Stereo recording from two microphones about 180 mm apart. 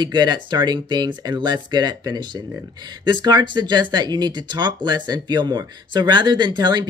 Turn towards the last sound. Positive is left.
turn(degrees=-25)  # may be behind; listen again after turning